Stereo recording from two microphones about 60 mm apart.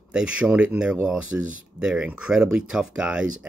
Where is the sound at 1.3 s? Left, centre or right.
Right.